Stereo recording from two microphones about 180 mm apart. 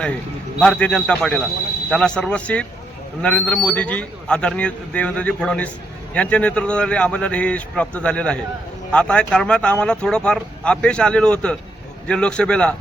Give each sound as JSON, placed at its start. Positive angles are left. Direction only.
{"t": 0.6, "sound": "a man's voice", "side_deg": 5}